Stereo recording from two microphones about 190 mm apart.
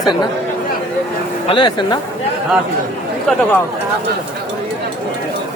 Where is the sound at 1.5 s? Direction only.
25° left (ahead or behind).